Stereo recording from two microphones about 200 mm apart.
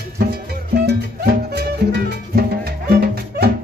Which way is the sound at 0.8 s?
55° right (ahead or behind).